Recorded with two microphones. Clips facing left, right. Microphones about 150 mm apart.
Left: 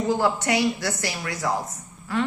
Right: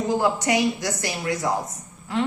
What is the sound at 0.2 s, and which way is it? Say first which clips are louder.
A man's voice: right 1 dB; 15° right (ahead or behind).